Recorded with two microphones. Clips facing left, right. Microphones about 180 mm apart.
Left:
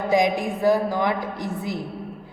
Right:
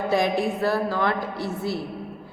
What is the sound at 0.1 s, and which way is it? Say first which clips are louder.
A woman's voice: left 2 dB; 15° left (ahead or behind).